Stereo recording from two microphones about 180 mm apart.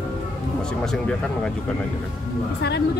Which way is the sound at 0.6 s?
5° left (ahead or behind).